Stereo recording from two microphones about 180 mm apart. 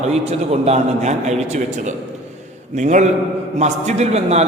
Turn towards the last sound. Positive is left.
turn(degrees=-35)  # may be behind; listen again after turning